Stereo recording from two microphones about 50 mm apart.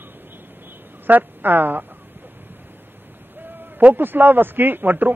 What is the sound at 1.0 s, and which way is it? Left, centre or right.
Speech, right.